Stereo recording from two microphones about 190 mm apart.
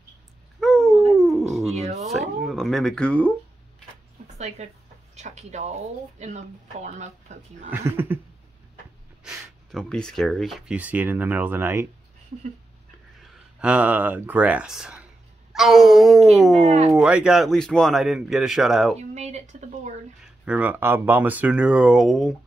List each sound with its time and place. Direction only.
0.6 s a sound: centre (ahead or behind)
1.1 s dog: centre (ahead or behind)
1.5 s a sound: centre (ahead or behind)
2.1 s speech: centre (ahead or behind)
4.4 s speech: 35° right (ahead or behind)
7.7 s speech: 10° right (ahead or behind)
9.7 s speech: 5° left (ahead or behind); by 11.9 s 15° right (ahead or behind)
13.6 s a man's voice: 5° right (ahead or behind)
16.6 s speech: 35° right (ahead or behind)
16.9 s a man's voice: 5° right (ahead or behind)
18.9 s speech: 35° right (ahead or behind)
20.4 s speech: 5° right (ahead or behind)